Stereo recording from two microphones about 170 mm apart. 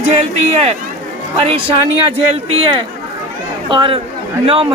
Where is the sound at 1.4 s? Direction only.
35° right (ahead or behind).